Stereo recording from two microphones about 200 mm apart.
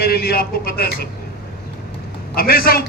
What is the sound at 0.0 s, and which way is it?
A man's voice, 50° left (ahead or behind).